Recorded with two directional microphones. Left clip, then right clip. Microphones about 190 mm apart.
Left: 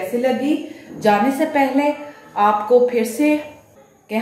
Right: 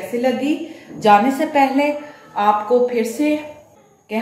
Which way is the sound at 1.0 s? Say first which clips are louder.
Right 3 dB; 15° right (ahead or behind).